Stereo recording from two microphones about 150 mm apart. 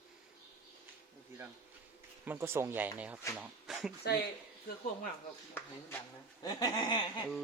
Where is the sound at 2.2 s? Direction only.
15° right (ahead or behind).